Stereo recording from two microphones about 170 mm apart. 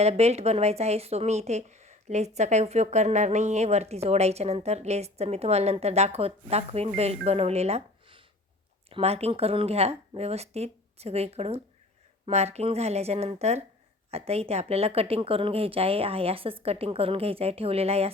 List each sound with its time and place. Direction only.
0.0 s speech: 40° right (ahead or behind)